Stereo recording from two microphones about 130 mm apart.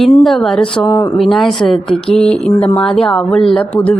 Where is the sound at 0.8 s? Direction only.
20° left (ahead or behind).